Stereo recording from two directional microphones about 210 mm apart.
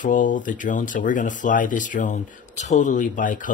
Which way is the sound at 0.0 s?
40° left (ahead or behind).